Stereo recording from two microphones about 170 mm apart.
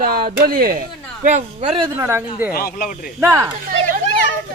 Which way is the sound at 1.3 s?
45° right (ahead or behind).